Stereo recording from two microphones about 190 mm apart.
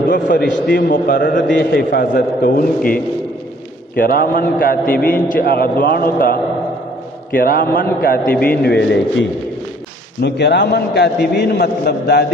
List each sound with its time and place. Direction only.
0.1 s a man's voice: 55° left (ahead or behind)
1.5 s a man's voice: 60° left (ahead or behind)
7.3 s a man's voice: 50° left (ahead or behind)
8.6 s a man's voice: 60° left (ahead or behind)
10.2 s a man's voice: 60° left (ahead or behind)